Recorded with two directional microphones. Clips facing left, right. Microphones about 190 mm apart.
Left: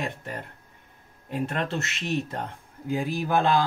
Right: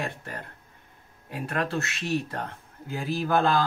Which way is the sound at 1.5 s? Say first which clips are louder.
Right 1 dB; 25° left (ahead or behind).